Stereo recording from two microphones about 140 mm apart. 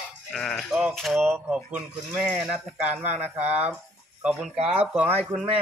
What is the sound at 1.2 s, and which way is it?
Speech, 15° right (ahead or behind).